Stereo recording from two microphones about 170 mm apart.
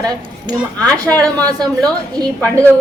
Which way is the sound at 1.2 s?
20° right (ahead or behind).